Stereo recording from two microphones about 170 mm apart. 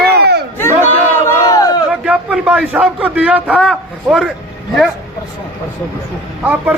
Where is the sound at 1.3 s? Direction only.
15° left (ahead or behind).